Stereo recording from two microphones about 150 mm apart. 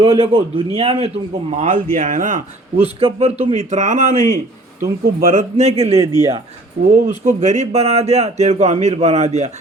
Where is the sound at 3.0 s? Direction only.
40° right (ahead or behind); by 4.2 s 55° right (ahead or behind).